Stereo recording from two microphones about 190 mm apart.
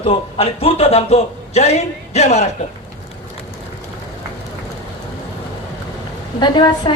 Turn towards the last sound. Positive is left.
turn(degrees=25)  # may be behind; listen again after turning